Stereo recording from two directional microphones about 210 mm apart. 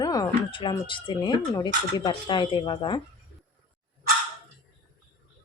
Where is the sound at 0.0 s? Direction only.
15° left (ahead or behind).